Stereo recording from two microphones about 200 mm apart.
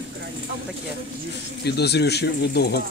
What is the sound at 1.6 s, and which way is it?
Speech, 55° left (ahead or behind).